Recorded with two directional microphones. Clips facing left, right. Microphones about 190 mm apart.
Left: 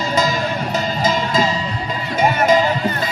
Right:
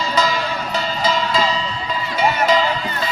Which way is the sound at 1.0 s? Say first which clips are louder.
Left 1 dB; 45° left (ahead or behind).